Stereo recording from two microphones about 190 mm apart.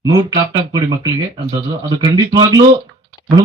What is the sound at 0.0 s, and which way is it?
Speech, 20° right (ahead or behind).